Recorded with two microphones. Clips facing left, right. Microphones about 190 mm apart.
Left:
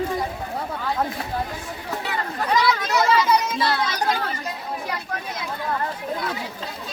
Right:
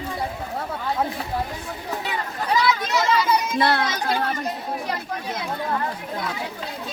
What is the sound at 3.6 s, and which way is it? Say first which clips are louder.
Speech: right 1 dB; 60° right (ahead or behind).